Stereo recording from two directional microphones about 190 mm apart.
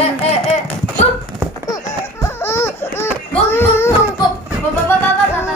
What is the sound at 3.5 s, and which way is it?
Child singing, 10° left (ahead or behind).